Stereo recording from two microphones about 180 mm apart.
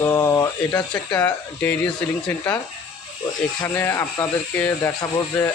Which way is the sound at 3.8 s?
15° left (ahead or behind).